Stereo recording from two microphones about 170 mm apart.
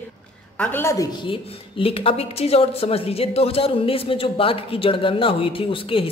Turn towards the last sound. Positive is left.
turn(degrees=30)  # may be behind; listen again after turning